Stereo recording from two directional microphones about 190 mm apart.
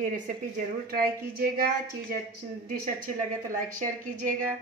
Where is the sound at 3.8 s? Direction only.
40° right (ahead or behind).